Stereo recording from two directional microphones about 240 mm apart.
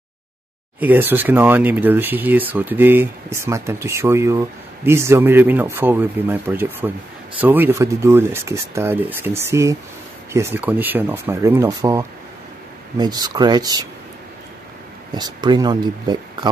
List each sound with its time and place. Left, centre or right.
0.7 s speech: centre
15.1 s speech: centre